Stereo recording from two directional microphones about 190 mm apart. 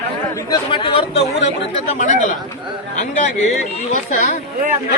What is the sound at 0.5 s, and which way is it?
Speech, 25° left (ahead or behind).